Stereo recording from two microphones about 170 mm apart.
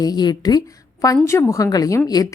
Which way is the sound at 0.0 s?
25° left (ahead or behind).